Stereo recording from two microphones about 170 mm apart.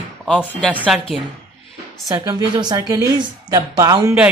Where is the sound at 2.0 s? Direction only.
20° right (ahead or behind).